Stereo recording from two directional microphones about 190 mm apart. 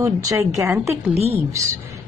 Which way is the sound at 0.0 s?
15° right (ahead or behind).